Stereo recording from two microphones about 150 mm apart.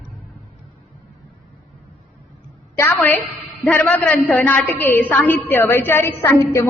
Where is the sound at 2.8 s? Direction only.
15° left (ahead or behind).